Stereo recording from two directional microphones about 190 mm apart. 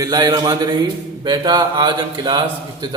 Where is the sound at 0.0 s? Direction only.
20° right (ahead or behind).